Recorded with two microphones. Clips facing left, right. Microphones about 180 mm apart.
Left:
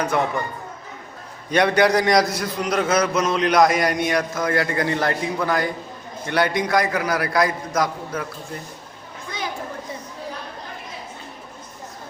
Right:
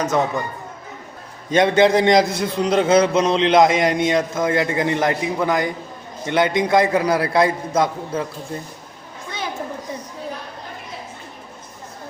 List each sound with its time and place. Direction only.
0.0 s a man's voice: 20° right (ahead or behind)
1.5 s a man's voice: 20° right (ahead or behind)